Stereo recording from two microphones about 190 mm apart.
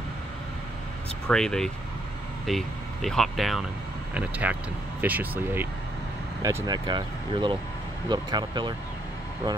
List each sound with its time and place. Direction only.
1.2 s speech: 5° left (ahead or behind); by 8.7 s 25° right (ahead or behind)